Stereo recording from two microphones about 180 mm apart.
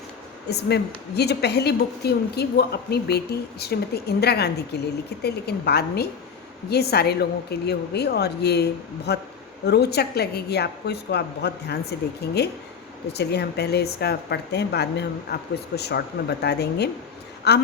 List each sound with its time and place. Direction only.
0.4 s a woman's voice: 65° left (ahead or behind)